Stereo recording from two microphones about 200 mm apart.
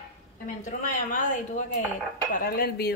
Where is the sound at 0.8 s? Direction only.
45° left (ahead or behind).